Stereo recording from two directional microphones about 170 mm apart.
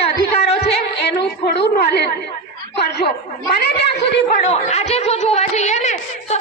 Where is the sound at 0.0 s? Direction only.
35° left (ahead or behind).